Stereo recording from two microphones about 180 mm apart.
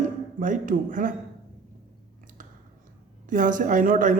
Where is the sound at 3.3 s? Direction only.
45° right (ahead or behind).